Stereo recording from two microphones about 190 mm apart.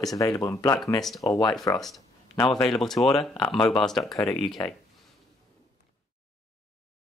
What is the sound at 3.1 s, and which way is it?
Speech, 20° left (ahead or behind).